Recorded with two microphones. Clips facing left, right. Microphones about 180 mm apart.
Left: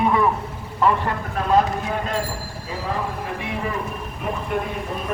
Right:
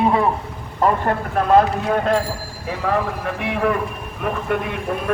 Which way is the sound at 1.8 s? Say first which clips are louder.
Right 6 dB; 60° right (ahead or behind).